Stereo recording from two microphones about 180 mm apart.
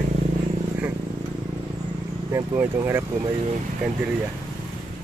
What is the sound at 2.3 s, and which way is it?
Speech, 10° right (ahead or behind).